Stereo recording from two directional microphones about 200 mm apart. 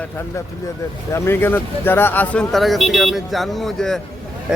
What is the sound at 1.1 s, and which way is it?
Speech, 10° left (ahead or behind).